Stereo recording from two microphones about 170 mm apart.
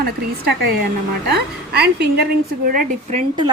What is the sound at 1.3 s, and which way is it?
Speech, 75° right (ahead or behind).